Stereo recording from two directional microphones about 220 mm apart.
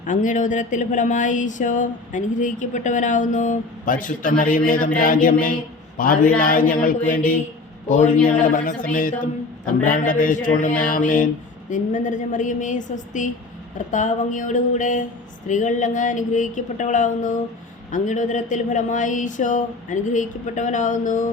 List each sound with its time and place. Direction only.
0.0 s speech: 35° left (ahead or behind)